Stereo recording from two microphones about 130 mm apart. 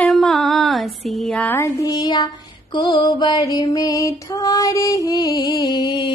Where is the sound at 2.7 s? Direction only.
35° left (ahead or behind).